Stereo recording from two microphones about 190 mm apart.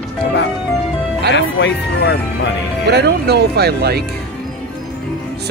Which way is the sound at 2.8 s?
60° right (ahead or behind).